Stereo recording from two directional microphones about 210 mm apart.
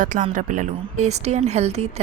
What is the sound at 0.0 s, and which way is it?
A woman's voice, 40° right (ahead or behind).